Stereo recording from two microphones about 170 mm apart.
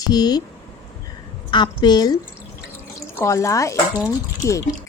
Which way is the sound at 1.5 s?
25° left (ahead or behind).